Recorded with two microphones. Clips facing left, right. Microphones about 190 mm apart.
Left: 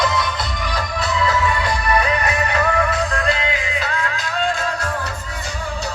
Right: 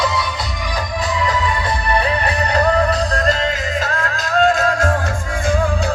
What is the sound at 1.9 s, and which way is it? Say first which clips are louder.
Music: right 1 dB; 30° right (ahead or behind).